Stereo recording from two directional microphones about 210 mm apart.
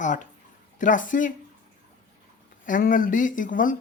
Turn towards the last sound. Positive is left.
turn(degrees=40)  # may be behind; listen again after turning